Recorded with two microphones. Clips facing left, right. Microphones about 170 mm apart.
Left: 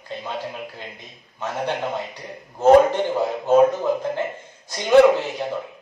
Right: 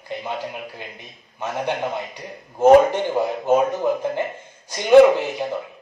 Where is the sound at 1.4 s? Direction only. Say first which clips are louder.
Right 1 dB; 15° right (ahead or behind).